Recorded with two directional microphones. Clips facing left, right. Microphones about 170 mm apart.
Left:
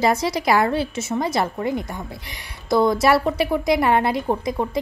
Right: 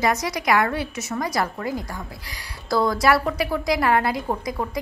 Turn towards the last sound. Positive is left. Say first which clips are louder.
# left 4 dB
turn(degrees=25)  # may be behind; listen again after turning